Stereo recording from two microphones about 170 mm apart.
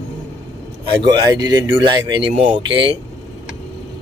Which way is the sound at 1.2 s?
20° right (ahead or behind).